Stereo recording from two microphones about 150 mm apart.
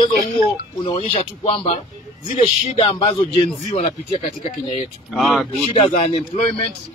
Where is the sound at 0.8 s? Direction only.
35° left (ahead or behind).